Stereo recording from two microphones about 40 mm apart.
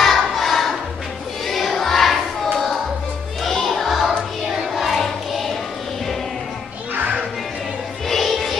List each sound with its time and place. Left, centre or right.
0.0 s music: centre
1.5 s choir: centre
3.4 s music: centre
4.5 s child singing: centre
8.1 s music: centre